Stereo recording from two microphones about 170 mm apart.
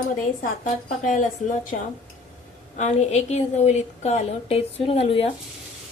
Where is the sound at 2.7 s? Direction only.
40° left (ahead or behind).